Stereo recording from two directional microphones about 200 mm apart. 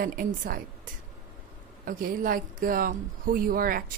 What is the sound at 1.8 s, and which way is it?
Speech, 45° right (ahead or behind).